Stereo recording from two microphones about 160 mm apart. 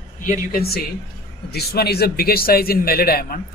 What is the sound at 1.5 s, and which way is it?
A man's voice, 80° left.